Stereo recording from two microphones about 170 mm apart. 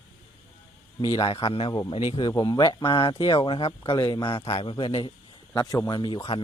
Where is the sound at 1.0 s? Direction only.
20° left (ahead or behind).